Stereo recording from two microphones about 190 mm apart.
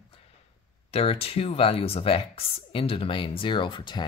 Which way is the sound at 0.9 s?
30° left (ahead or behind).